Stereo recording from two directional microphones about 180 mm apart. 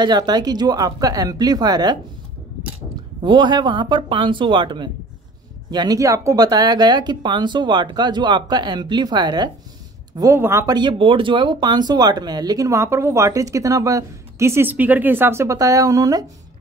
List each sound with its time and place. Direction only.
0.0 s speech: 25° right (ahead or behind)
3.3 s speech: 25° right (ahead or behind)